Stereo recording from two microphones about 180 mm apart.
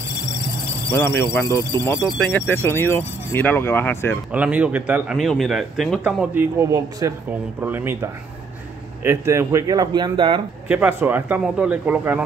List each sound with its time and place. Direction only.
0.8 s speech: 15° left (ahead or behind)
4.3 s a man's voice: 5° right (ahead or behind); by 10.4 s 25° right (ahead or behind)
10.7 s speech: 10° right (ahead or behind)